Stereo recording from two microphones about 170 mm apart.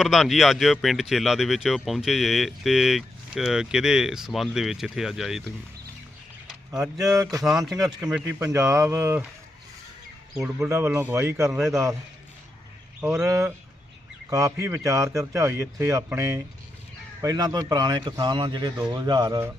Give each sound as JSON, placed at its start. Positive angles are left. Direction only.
{"t": 0.0, "sound": "speech", "side_deg": 0}
{"t": 7.0, "sound": "a man's voice", "side_deg": -20}
{"t": 7.4, "sound": "speech", "side_deg": 0}
{"t": 10.4, "sound": "speech", "side_deg": -15}
{"t": 13.0, "sound": "a man's voice", "side_deg": -15}